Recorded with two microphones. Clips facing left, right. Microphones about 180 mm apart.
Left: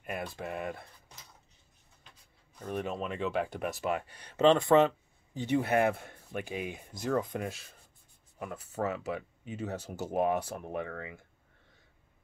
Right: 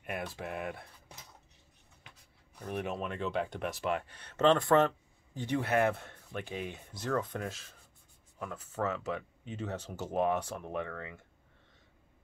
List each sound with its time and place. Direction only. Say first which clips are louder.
0.0 s speech: left 1 dB; centre (ahead or behind)
2.6 s speech: left 1 dB; 5° right (ahead or behind)